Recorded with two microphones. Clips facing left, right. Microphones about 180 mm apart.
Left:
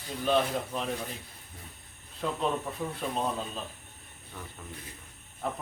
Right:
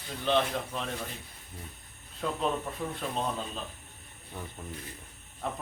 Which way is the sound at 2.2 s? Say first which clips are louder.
Even; 5° left (ahead or behind).